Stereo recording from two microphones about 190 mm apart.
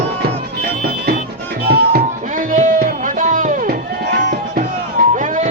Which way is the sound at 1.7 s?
55° right (ahead or behind).